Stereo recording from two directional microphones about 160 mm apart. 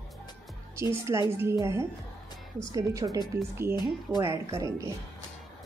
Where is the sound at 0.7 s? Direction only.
15° right (ahead or behind).